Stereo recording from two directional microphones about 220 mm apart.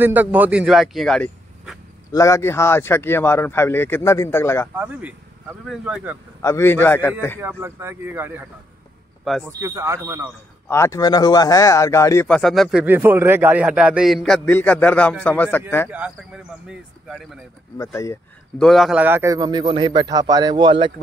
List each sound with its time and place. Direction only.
0.0 s a man's voice: 10° right (ahead or behind)
2.1 s speech: 15° left (ahead or behind)
4.7 s speech: 5° right (ahead or behind)
6.4 s speech: 10° left (ahead or behind)
7.3 s a man's voice: 10° right (ahead or behind)
9.5 s a man's voice: 15° right (ahead or behind)
10.7 s speech: 15° left (ahead or behind)
15.9 s speech: 5° right (ahead or behind)
17.7 s speech: 15° left (ahead or behind)
18.6 s a man's voice: centre (ahead or behind); by 20.9 s 20° right (ahead or behind)